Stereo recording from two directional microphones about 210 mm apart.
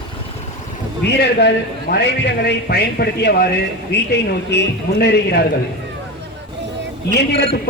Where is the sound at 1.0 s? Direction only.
55° left (ahead or behind).